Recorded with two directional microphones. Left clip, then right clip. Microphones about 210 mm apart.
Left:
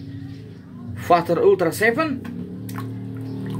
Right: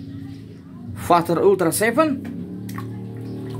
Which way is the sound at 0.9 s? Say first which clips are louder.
Even; 15° right (ahead or behind).